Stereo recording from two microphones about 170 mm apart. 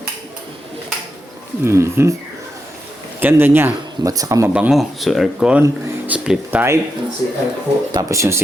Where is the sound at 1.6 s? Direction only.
15° right (ahead or behind).